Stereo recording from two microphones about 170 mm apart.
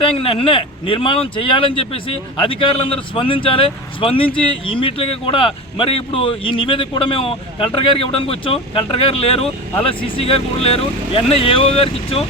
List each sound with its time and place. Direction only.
0.0 s speech: 30° left (ahead or behind)